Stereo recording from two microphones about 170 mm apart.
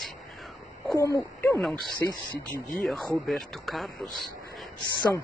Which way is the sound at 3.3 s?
Centre (ahead or behind).